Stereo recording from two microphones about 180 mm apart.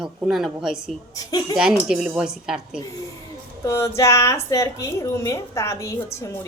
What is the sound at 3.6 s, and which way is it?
Speech, 15° left (ahead or behind).